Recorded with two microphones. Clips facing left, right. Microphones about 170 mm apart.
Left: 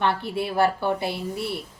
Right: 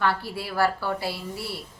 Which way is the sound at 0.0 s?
20° left (ahead or behind).